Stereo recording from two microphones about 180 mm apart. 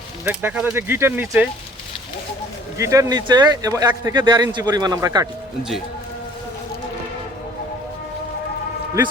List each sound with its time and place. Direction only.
0.3 s speech: 10° right (ahead or behind)
2.7 s speech: 15° right (ahead or behind)